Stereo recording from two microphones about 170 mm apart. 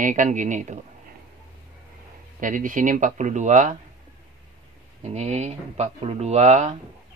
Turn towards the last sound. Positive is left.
turn(degrees=-40)  # may be behind; listen again after turning